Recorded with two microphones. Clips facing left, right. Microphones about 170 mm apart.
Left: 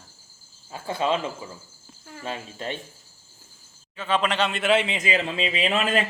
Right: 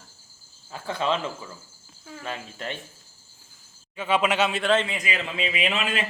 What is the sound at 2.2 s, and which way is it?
Speech, 25° left (ahead or behind).